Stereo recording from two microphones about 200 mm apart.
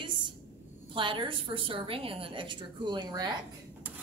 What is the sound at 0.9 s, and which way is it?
A woman's voice, 25° right (ahead or behind).